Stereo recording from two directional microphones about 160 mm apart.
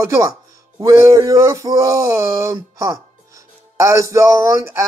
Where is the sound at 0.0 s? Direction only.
20° right (ahead or behind).